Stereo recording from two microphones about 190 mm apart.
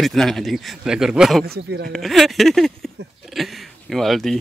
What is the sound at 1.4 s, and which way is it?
Speech, 60° right (ahead or behind).